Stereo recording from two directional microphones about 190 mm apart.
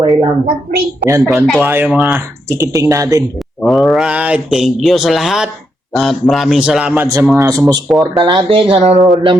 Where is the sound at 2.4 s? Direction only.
15° right (ahead or behind).